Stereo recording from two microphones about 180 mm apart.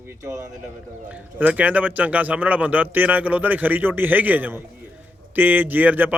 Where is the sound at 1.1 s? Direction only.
5° right (ahead or behind).